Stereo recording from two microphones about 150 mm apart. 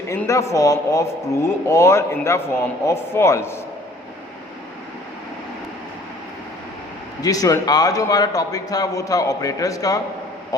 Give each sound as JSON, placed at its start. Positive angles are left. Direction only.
{"t": 0.1, "sound": "a man's voice", "side_deg": 20}
{"t": 7.2, "sound": "a man's voice", "side_deg": 25}